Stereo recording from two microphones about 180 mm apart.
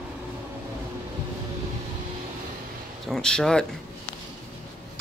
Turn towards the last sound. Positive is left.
turn(degrees=5)  # may be behind; listen again after turning